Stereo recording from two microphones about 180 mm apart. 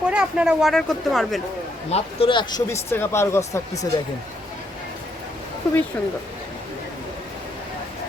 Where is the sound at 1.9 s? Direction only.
30° left (ahead or behind); by 3.8 s 15° left (ahead or behind).